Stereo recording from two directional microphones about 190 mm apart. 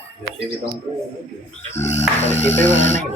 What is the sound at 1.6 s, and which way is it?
Music, 35° left (ahead or behind).